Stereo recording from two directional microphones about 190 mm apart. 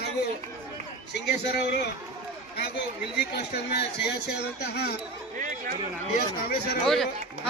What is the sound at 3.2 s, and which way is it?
Speech, 60° left (ahead or behind).